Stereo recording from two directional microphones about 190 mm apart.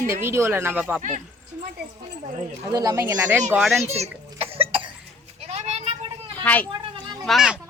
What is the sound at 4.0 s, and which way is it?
Cough, 30° right (ahead or behind).